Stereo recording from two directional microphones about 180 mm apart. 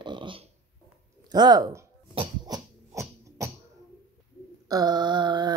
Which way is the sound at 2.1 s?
20° right (ahead or behind).